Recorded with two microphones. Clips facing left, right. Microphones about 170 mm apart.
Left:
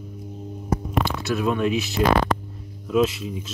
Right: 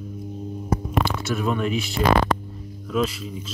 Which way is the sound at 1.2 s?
Centre (ahead or behind).